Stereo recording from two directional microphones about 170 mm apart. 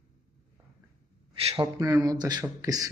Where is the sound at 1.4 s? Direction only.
35° right (ahead or behind).